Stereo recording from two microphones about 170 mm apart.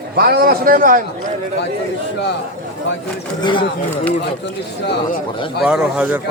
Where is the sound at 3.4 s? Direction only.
30° left (ahead or behind).